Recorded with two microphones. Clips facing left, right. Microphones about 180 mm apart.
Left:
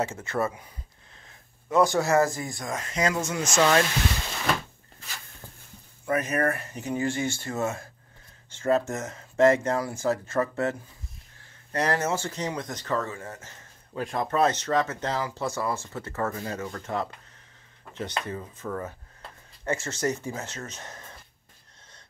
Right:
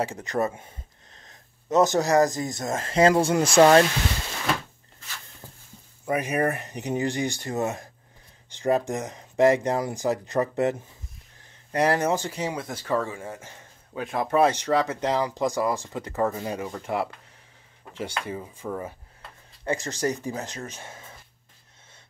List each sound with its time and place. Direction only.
0.2 s speech: 15° right (ahead or behind); by 3.8 s 35° right (ahead or behind)
6.0 s speech: 15° right (ahead or behind)
19.9 s speech: 35° right (ahead or behind)
20.4 s speech: 15° right (ahead or behind)